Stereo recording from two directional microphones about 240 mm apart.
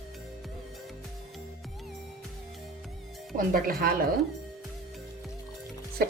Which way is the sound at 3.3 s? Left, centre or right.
Right.